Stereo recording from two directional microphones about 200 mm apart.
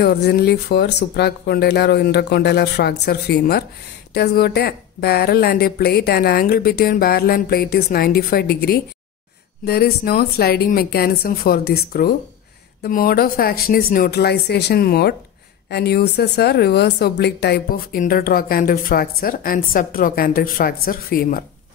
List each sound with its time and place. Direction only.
0.0 s speech: 55° left (ahead or behind)